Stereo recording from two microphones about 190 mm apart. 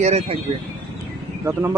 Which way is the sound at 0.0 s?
35° right (ahead or behind).